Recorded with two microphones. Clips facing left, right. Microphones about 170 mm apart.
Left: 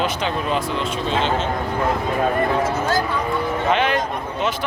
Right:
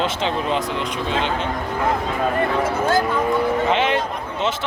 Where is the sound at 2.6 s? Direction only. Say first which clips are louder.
Right 1 dB; 50° right (ahead or behind).